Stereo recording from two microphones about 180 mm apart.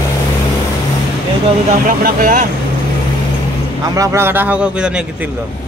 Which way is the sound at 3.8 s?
20° right (ahead or behind).